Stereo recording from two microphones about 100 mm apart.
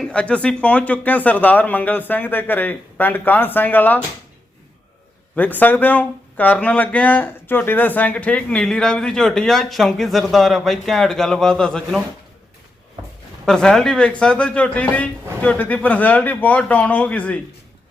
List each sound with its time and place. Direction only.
0.0 s speech: 10° left (ahead or behind)
5.4 s speech: 15° left (ahead or behind)
13.4 s speech: 5° left (ahead or behind)